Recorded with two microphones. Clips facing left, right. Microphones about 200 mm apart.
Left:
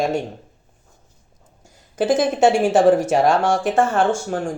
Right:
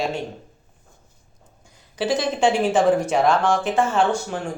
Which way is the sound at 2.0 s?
50° left (ahead or behind).